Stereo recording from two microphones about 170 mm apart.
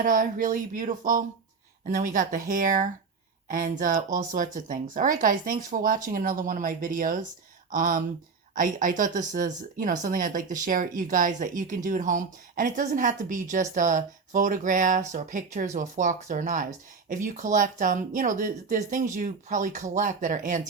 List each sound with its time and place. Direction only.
0.0 s speech: 55° right (ahead or behind)